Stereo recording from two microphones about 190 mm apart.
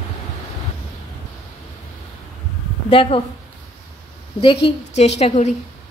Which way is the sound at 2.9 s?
30° left (ahead or behind).